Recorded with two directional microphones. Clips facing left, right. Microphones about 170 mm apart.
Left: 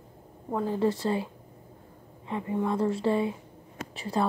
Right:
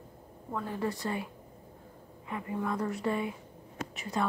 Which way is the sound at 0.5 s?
30° left (ahead or behind).